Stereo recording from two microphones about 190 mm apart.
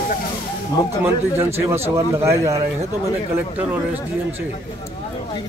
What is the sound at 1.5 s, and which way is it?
A man's voice, 15° right (ahead or behind).